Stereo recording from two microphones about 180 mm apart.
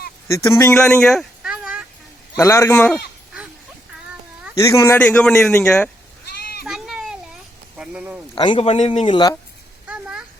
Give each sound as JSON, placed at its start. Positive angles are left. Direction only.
{"t": 0.3, "sound": "speech", "side_deg": 15}
{"t": 0.7, "sound": "a sound", "side_deg": 5}
{"t": 2.3, "sound": "speech", "side_deg": 15}
{"t": 4.5, "sound": "speech", "side_deg": 15}
{"t": 6.2, "sound": "sheep", "side_deg": 60}
{"t": 6.7, "sound": "a sound", "side_deg": 0}
{"t": 7.8, "sound": "speech", "side_deg": -5}
{"t": 8.4, "sound": "speech", "side_deg": 30}
{"t": 9.8, "sound": "a sound", "side_deg": -5}